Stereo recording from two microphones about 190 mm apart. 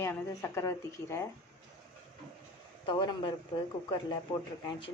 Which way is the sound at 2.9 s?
20° left (ahead or behind).